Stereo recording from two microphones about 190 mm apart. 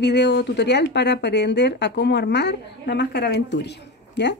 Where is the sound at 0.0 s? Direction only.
65° left (ahead or behind).